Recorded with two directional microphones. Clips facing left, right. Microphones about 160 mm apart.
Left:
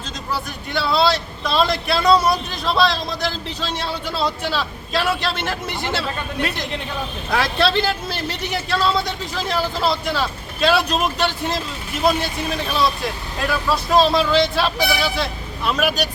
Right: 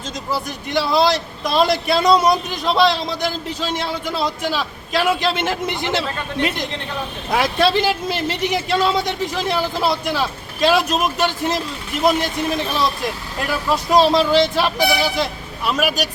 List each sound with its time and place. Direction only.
0.3 s a man's voice: 15° right (ahead or behind)
13.5 s a man's voice: 15° right (ahead or behind)